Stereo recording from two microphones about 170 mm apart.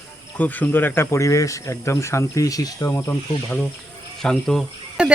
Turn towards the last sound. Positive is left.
turn(degrees=0)  # may be behind; listen again after turning